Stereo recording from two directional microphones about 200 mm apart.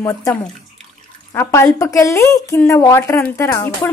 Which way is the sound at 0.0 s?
15° left (ahead or behind).